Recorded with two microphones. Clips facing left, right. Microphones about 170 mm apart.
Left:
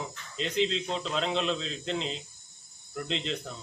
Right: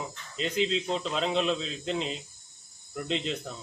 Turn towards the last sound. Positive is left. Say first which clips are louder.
# right 2 dB
turn(degrees=-5)  # may be behind; listen again after turning